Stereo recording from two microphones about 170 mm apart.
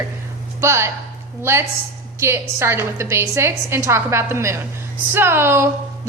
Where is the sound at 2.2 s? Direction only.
15° right (ahead or behind).